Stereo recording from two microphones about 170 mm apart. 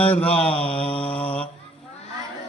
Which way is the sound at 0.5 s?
35° left (ahead or behind).